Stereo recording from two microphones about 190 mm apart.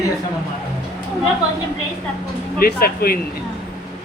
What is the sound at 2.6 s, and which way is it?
Speech, 50° left (ahead or behind).